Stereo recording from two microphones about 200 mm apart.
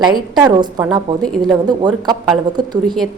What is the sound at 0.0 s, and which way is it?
A woman's voice, 20° right (ahead or behind).